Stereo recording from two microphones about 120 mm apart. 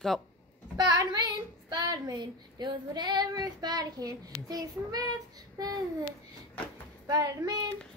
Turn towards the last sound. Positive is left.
turn(degrees=-35)  # may be behind; listen again after turning